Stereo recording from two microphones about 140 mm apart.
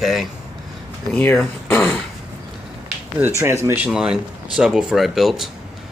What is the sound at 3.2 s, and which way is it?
Speech, 15° right (ahead or behind).